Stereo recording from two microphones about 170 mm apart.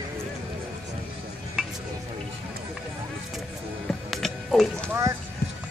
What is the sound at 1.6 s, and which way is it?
Stir, 5° left (ahead or behind).